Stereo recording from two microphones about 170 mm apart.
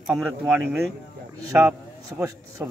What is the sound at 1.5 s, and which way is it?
A man's voice, 15° right (ahead or behind).